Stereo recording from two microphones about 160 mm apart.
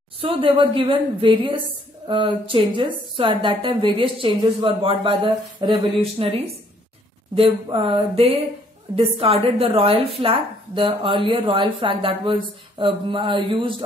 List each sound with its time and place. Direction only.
0.2 s a woman's voice: 35° right (ahead or behind)